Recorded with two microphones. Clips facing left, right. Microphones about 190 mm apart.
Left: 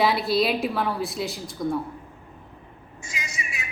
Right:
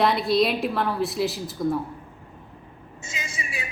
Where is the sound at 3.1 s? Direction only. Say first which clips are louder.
Right 1 dB; 25° right (ahead or behind).